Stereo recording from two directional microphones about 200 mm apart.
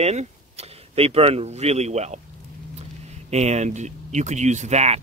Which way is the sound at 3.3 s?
35° right (ahead or behind).